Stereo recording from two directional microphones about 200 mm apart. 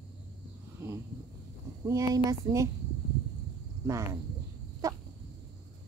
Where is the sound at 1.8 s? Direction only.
15° right (ahead or behind).